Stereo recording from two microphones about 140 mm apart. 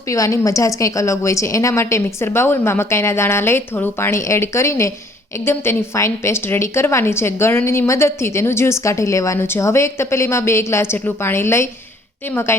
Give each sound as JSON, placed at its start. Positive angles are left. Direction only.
{"t": 0.1, "sound": "a woman's voice", "side_deg": 20}